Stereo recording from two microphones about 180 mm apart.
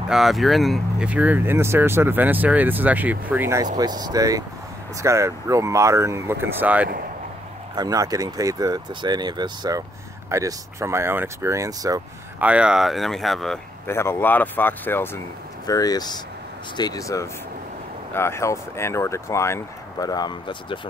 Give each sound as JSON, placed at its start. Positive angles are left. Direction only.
{"t": 0.1, "sound": "speech", "side_deg": 0}
{"t": 3.7, "sound": "speech", "side_deg": -20}
{"t": 7.7, "sound": "speech", "side_deg": -20}
{"t": 12.4, "sound": "speech", "side_deg": -5}
{"t": 13.8, "sound": "speech", "side_deg": 15}